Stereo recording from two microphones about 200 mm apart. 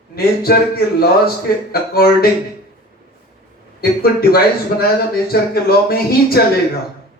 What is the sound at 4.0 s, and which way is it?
Speech, 50° left (ahead or behind).